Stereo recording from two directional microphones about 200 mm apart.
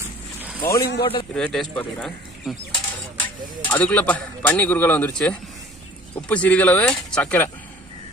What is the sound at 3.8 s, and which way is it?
A man's voice, 5° left (ahead or behind).